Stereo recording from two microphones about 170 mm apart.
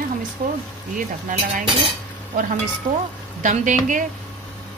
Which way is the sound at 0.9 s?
50° right (ahead or behind).